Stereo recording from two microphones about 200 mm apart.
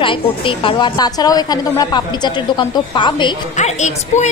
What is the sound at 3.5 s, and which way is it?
Speech, 35° left (ahead or behind).